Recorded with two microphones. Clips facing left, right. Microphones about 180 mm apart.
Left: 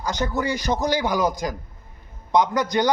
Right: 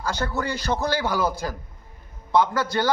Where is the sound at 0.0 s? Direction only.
15° left (ahead or behind).